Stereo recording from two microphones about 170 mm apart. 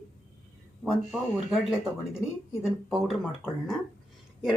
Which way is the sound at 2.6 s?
Centre (ahead or behind).